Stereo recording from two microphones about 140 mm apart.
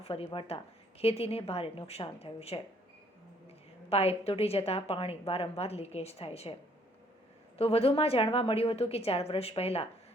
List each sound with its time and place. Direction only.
0.0 s a woman's voice: 45° left (ahead or behind)
3.8 s a woman's voice: 45° left (ahead or behind)
7.6 s a woman's voice: 45° left (ahead or behind)